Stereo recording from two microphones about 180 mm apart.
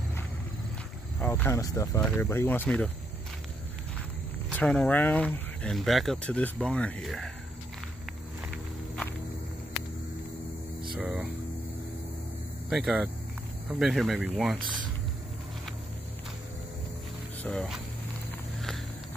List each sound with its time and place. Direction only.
1.2 s speech: 10° left (ahead or behind)
4.5 s speech: 5° left (ahead or behind)
11.0 s hum: 5° right (ahead or behind)
12.6 s speech: 5° right (ahead or behind)
17.4 s speech: 5° left (ahead or behind)